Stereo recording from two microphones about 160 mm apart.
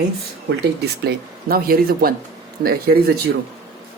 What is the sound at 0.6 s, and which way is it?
Speech, 90° right.